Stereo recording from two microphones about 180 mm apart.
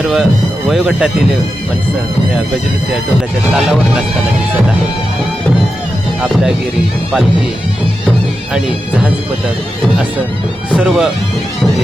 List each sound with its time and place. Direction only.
0.0 s speech: 5° right (ahead or behind)
10.8 s speech: 5° right (ahead or behind)